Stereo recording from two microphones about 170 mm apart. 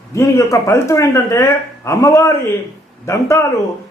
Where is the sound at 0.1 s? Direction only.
20° left (ahead or behind).